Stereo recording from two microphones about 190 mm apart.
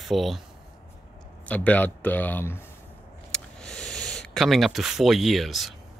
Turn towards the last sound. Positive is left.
turn(degrees=0)  # may be behind; listen again after turning